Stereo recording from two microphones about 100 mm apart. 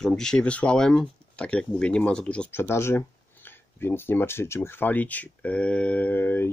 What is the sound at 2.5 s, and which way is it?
Speech, 25° left (ahead or behind).